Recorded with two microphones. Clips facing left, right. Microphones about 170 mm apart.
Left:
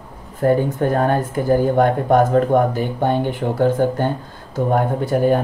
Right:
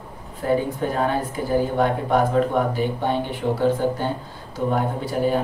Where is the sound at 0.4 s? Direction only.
50° left (ahead or behind).